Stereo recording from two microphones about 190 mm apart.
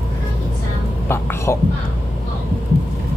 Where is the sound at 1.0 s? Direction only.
15° left (ahead or behind).